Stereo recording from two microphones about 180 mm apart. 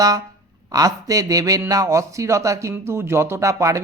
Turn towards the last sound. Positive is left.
turn(degrees=-15)  # may be behind; listen again after turning